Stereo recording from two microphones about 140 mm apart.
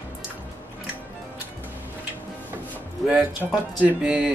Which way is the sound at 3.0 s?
5° right (ahead or behind).